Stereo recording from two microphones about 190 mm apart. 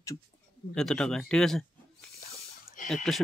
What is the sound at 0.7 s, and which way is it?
Speech, 5° left (ahead or behind).